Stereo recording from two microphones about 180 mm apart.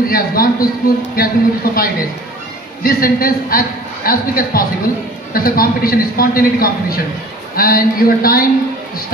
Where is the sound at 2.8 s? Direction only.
55° left (ahead or behind).